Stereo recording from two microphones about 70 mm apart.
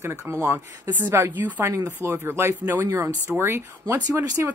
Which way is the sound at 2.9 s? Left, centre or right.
Right.